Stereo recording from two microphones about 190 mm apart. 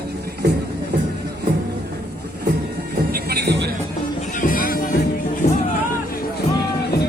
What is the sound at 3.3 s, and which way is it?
Music, 60° right (ahead or behind).